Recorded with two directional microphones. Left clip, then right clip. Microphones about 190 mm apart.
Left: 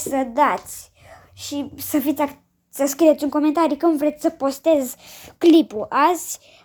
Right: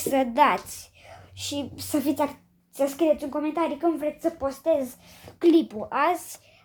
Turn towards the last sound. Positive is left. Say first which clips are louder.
# left 6 dB
turn(degrees=20)  # may be behind; listen again after turning